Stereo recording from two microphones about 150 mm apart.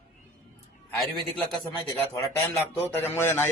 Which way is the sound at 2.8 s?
15° left (ahead or behind).